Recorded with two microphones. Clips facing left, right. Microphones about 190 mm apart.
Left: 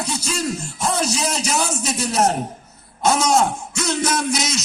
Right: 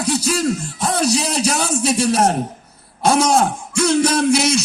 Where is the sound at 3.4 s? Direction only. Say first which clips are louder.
Right 3 dB; 55° right (ahead or behind).